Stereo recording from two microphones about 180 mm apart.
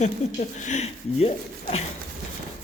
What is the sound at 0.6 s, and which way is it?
Speech, 40° left (ahead or behind).